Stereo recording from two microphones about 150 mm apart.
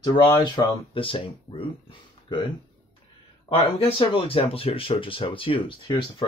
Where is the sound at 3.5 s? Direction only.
40° left (ahead or behind).